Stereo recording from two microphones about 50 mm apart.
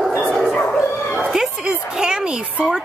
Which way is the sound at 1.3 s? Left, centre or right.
Centre.